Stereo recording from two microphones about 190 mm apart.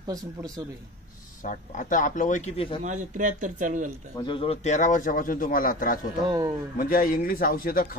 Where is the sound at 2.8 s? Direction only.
40° right (ahead or behind).